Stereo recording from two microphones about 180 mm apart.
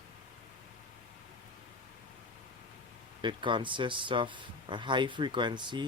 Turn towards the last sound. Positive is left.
turn(degrees=-25)  # may be behind; listen again after turning